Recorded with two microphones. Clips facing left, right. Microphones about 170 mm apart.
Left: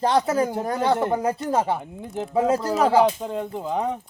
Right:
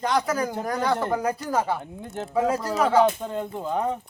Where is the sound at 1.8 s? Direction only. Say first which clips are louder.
Left 3 dB; 10° left (ahead or behind).